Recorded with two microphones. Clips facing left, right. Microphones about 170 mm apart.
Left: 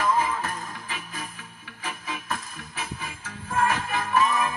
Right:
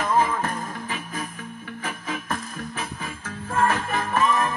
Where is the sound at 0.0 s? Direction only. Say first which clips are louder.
Right 2 dB; 40° right (ahead or behind).